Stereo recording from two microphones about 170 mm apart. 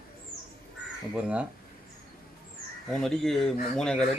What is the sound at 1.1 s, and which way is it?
Speech, 5° right (ahead or behind).